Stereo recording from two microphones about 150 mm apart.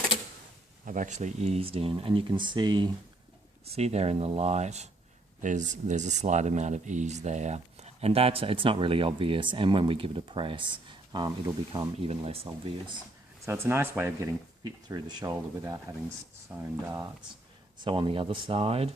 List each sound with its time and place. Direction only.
0.9 s speech: 60° right (ahead or behind); by 2.9 s 30° right (ahead or behind)
3.8 s speech: 45° right (ahead or behind)
13.4 s speech: 15° right (ahead or behind)
17.8 s speech: 35° right (ahead or behind)